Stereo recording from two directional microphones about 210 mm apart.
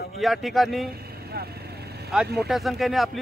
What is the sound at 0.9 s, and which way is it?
Vehicle, 50° right (ahead or behind).